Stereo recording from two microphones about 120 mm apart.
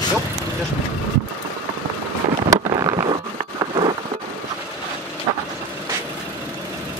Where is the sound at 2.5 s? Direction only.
35° right (ahead or behind).